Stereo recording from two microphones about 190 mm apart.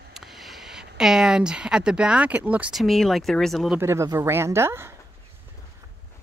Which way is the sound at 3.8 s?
15° right (ahead or behind).